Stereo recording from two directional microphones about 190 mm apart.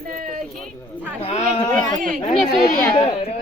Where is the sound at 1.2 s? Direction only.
30° left (ahead or behind).